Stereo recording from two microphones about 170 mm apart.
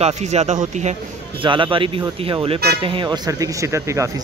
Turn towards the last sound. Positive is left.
turn(degrees=-15)  # may be behind; listen again after turning